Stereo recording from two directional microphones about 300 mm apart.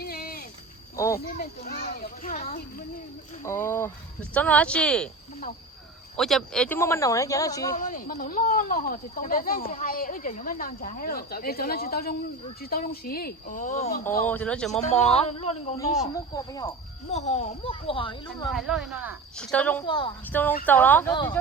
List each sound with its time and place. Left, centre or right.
0.0 s a sound: left
0.9 s speech: centre
1.3 s speech: left
3.4 s speech: centre
6.1 s speech: centre
7.8 s speech: left
14.3 s speech: centre
14.8 s speech: left
18.5 s speech: centre
19.8 s speech: centre